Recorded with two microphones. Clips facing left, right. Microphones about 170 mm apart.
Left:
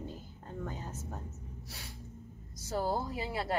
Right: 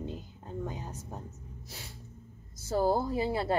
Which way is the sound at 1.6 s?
25° right (ahead or behind).